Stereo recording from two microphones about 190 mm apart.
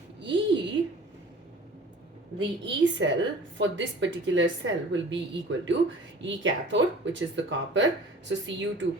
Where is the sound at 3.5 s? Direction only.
70° right (ahead or behind).